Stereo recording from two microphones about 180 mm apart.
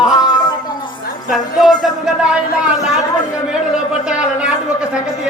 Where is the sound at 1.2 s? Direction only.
Centre (ahead or behind).